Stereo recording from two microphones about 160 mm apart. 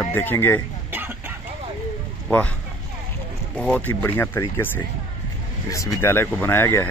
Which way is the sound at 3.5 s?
5° left (ahead or behind).